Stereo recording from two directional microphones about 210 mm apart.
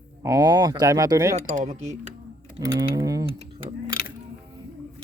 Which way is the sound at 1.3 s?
35° right (ahead or behind).